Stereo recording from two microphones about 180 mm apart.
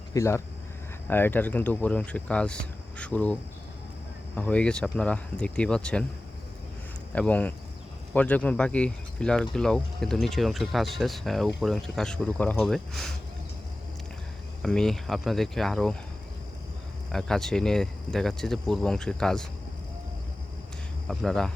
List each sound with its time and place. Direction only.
0.1 s speech: 15° left (ahead or behind)
4.4 s speech: 5° left (ahead or behind)
7.1 s speech: 10° left (ahead or behind)
14.6 s speech: 5° left (ahead or behind)
17.1 s speech: 5° left (ahead or behind)
21.1 s speech: centre (ahead or behind)